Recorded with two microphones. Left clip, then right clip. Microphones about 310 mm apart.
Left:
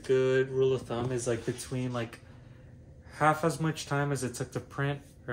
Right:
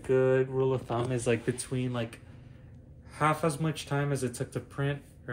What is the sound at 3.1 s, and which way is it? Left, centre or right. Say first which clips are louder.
Speech: left 1 dB; centre.